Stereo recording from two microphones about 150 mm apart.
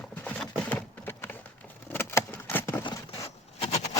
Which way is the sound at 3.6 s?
45° left (ahead or behind).